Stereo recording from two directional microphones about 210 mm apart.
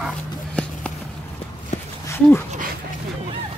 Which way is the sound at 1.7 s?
35° left (ahead or behind).